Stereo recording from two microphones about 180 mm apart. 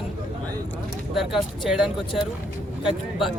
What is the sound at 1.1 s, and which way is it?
Speech, centre (ahead or behind).